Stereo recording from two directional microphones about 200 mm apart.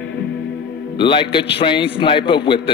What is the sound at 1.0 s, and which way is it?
Speech, 25° left (ahead or behind).